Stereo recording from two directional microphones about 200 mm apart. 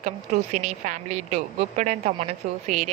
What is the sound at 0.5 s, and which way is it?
Speech, 35° right (ahead or behind).